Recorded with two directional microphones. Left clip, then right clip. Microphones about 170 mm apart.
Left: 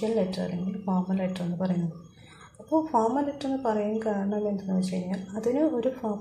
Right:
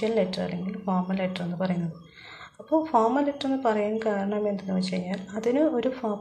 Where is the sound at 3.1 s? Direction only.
5° right (ahead or behind).